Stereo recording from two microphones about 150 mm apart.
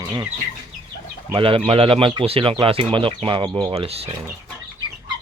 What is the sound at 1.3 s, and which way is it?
Speech, 35° right (ahead or behind).